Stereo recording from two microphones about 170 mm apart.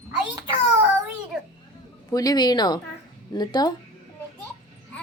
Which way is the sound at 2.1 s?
20° left (ahead or behind).